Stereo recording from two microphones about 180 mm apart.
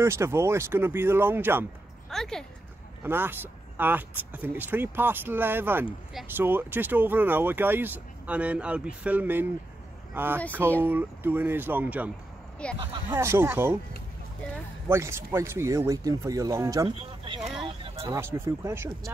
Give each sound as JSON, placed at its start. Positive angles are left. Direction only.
{"t": 0.0, "sound": "speech", "side_deg": -15}
{"t": 2.0, "sound": "speech", "side_deg": 0}
{"t": 3.0, "sound": "speech", "side_deg": -10}
{"t": 12.6, "sound": "speech", "side_deg": 5}
{"t": 13.1, "sound": "speech", "side_deg": -15}
{"t": 14.9, "sound": "speech", "side_deg": -15}
{"t": 17.6, "sound": "a sound", "side_deg": -30}
{"t": 18.1, "sound": "speech", "side_deg": -15}